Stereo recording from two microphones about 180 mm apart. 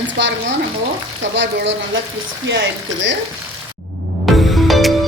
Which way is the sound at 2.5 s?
90° right.